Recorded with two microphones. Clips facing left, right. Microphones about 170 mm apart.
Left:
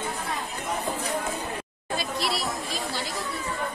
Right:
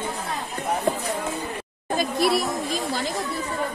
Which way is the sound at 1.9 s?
50° right (ahead or behind).